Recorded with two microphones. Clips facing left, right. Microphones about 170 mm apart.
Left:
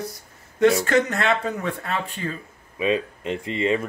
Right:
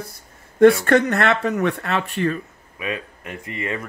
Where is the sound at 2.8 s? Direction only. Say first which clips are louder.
Left 6 dB; 25° left (ahead or behind).